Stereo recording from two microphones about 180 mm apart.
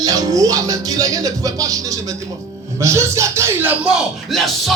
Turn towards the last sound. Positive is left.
turn(degrees=0)  # may be behind; listen again after turning